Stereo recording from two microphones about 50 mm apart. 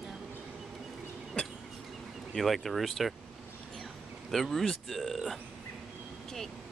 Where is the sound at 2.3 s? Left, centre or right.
Centre.